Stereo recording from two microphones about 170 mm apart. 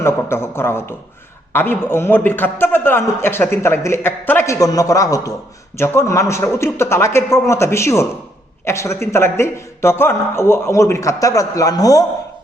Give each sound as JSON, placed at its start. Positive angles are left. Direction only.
{"t": 0.0, "sound": "a man's voice", "side_deg": 15}